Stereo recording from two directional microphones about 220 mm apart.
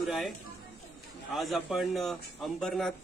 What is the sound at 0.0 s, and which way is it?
A man's voice, centre (ahead or behind).